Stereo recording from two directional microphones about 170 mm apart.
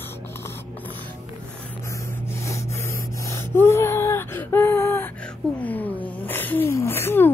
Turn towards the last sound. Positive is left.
turn(degrees=15)  # may be behind; listen again after turning